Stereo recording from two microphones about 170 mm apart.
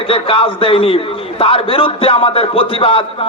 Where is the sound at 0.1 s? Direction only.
35° left (ahead or behind).